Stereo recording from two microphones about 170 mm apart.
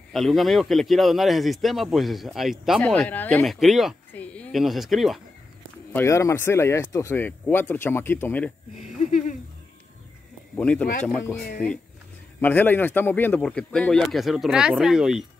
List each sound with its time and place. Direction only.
0.1 s speech: centre (ahead or behind)
5.9 s speech: 15° left (ahead or behind)
10.5 s speech: 5° left (ahead or behind)
12.4 s speech: 10° left (ahead or behind)